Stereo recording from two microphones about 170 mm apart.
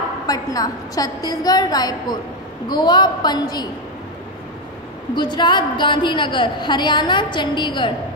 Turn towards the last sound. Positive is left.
turn(degrees=30)  # may be behind; listen again after turning